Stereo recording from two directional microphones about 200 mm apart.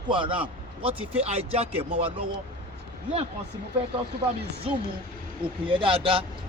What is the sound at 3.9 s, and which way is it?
Speech, 30° right (ahead or behind).